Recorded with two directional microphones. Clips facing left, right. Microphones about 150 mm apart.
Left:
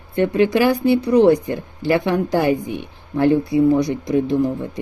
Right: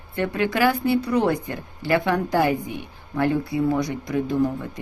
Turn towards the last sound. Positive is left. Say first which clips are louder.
# left 3 dB
turn(degrees=20)  # may be behind; listen again after turning